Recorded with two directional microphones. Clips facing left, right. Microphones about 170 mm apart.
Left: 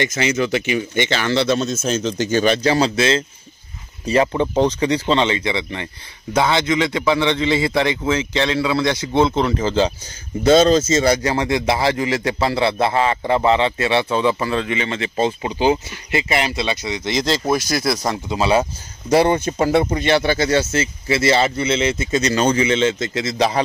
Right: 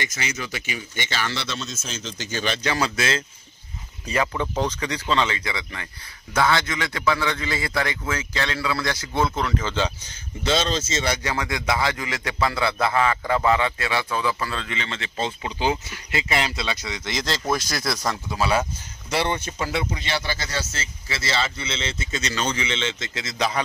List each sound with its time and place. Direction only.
0.1 s speech: 60° left (ahead or behind); by 9.9 s 35° left (ahead or behind)
10.4 s speech: 45° left (ahead or behind); by 17.9 s 10° left (ahead or behind)
18.0 s speech: 20° left (ahead or behind)
19.0 s speech: 45° left (ahead or behind)